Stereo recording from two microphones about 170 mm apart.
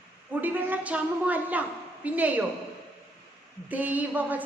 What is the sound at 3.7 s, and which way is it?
Speech, 10° right (ahead or behind).